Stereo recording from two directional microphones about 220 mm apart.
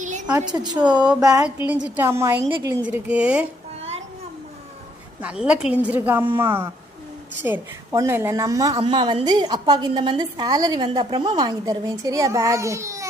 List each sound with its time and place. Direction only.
0.0 s a sound: 35° right (ahead or behind)
0.3 s a woman's voice: 15° right (ahead or behind)
5.2 s a woman's voice: 5° right (ahead or behind)